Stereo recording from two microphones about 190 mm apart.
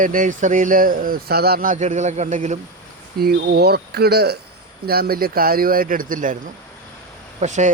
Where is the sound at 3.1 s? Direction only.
55° right (ahead or behind).